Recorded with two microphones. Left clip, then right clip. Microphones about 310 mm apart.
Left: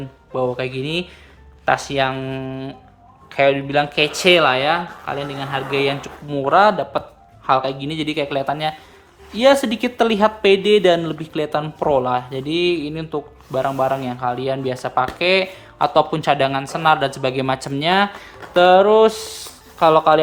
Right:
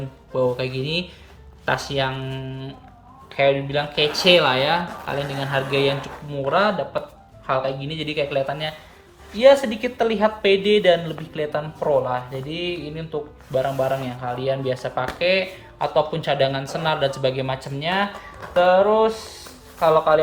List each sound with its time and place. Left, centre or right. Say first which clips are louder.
0.3 s speech: even; centre; by 20.1 s left